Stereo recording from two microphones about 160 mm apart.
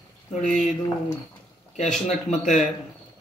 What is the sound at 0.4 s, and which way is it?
Speech, 50° left (ahead or behind).